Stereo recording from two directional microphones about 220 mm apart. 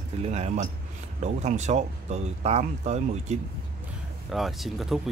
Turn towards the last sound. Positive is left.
turn(degrees=0)  # may be behind; listen again after turning